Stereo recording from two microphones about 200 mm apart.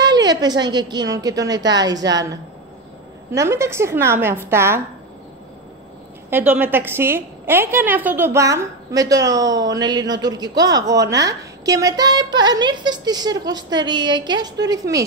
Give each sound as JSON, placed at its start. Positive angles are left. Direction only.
{"t": 0.0, "sound": "a woman's voice", "side_deg": -20}
{"t": 6.3, "sound": "a woman's voice", "side_deg": -10}